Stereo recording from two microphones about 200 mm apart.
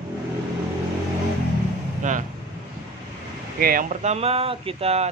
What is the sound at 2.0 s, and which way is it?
Vehicle, 40° right (ahead or behind).